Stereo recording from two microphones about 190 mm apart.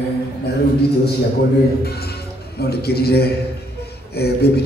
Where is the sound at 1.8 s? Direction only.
55° left (ahead or behind).